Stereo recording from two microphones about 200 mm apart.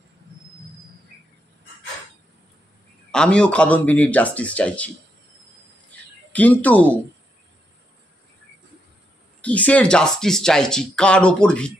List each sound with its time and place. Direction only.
3.1 s speech: 5° left (ahead or behind)
5.9 s a sound: 5° left (ahead or behind)
9.4 s speech: 5° left (ahead or behind)